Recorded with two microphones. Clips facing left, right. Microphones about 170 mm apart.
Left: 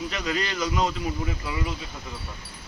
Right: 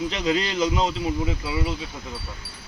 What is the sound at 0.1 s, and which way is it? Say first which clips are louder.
Speech: right 5 dB; 25° right (ahead or behind).